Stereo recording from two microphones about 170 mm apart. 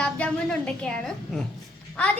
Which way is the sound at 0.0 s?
5° left (ahead or behind).